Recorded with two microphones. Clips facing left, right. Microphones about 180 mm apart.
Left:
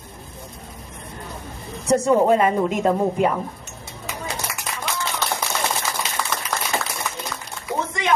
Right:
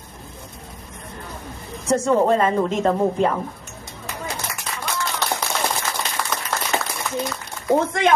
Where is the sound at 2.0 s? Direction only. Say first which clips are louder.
Left 1 dB; 10° left (ahead or behind).